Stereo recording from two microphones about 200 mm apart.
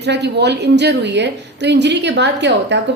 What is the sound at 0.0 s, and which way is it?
A woman's voice, 60° right (ahead or behind).